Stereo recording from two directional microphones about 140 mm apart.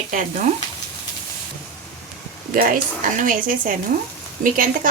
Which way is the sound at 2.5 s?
75° right (ahead or behind).